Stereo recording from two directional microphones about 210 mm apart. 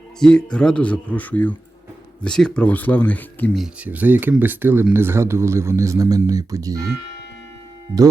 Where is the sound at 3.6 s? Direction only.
5° right (ahead or behind).